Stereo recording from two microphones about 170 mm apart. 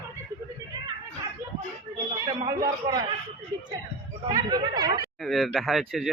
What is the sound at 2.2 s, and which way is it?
Speech, 25° right (ahead or behind).